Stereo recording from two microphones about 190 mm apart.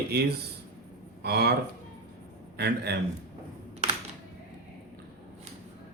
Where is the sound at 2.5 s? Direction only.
60° right (ahead or behind).